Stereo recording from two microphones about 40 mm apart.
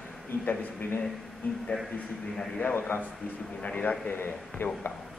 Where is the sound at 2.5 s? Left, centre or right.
Left.